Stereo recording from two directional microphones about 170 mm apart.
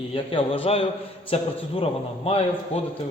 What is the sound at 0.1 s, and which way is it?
A man's voice, 35° left (ahead or behind).